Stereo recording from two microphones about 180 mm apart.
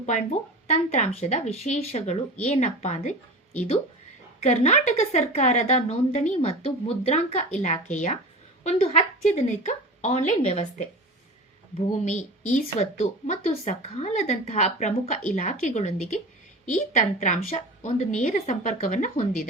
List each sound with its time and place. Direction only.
0.0 s a woman's voice: 40° left (ahead or behind)